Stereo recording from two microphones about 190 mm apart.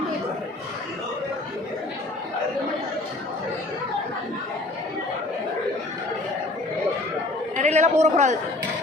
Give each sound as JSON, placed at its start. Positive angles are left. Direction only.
{"t": 7.5, "sound": "chatter", "side_deg": -40}